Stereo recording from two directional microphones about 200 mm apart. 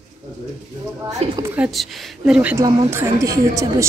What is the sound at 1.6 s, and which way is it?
Speech, centre (ahead or behind).